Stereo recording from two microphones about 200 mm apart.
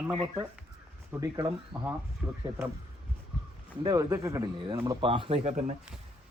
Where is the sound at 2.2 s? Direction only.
15° right (ahead or behind).